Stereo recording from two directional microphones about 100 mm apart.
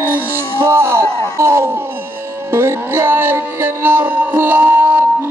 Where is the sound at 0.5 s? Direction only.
25° right (ahead or behind).